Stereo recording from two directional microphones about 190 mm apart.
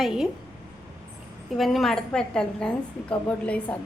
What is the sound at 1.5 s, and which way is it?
A woman's voice, centre (ahead or behind).